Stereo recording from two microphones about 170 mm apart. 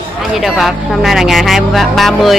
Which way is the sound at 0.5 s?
Centre (ahead or behind).